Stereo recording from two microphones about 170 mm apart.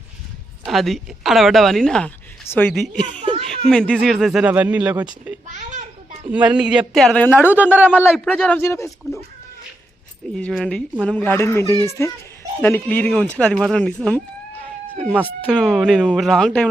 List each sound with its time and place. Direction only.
0.6 s speech: centre (ahead or behind)
3.2 s a sound: 30° right (ahead or behind)
3.7 s speech: 5° left (ahead or behind)
6.2 s speech: 10° right (ahead or behind); by 7.3 s 10° left (ahead or behind)
7.3 s speech: 10° right (ahead or behind)
8.2 s speech: 5° left (ahead or behind)
10.3 s speech: 5° left (ahead or behind)